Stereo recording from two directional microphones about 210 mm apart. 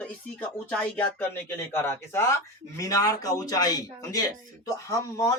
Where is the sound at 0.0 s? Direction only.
5° left (ahead or behind).